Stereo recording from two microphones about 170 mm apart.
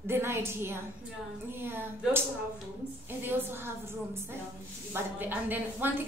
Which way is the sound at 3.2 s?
15° right (ahead or behind).